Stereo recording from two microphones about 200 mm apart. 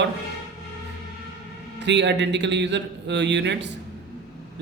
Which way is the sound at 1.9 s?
60° right (ahead or behind).